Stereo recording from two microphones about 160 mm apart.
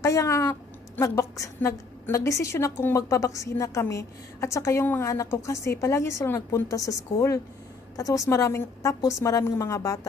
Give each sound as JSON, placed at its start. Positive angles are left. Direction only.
{"t": 0.0, "sound": "a woman's voice", "side_deg": 20}